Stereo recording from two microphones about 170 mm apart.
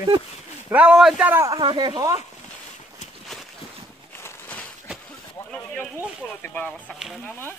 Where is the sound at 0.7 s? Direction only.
10° right (ahead or behind).